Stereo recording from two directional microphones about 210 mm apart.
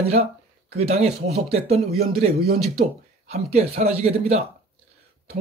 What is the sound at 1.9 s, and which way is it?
Speech, 45° right (ahead or behind).